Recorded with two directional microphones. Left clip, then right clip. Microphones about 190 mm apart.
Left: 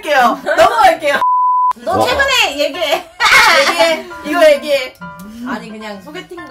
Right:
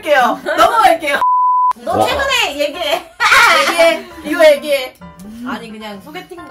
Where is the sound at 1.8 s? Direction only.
20° left (ahead or behind).